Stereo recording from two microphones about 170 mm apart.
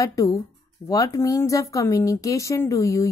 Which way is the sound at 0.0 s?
20° left (ahead or behind).